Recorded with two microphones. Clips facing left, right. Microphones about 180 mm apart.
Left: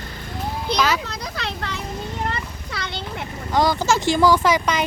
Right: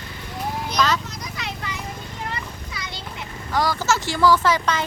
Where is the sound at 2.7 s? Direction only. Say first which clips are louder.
Left 5 dB; 65° left (ahead or behind).